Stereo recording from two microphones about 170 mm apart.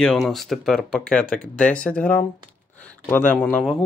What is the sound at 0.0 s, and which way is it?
Speech, centre (ahead or behind).